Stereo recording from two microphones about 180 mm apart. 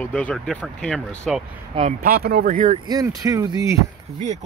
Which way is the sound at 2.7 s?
20° right (ahead or behind).